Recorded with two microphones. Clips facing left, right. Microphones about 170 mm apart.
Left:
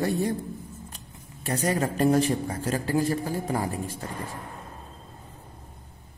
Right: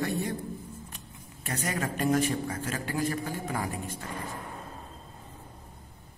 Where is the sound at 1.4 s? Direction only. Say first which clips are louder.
Left 6 dB; 35° left (ahead or behind).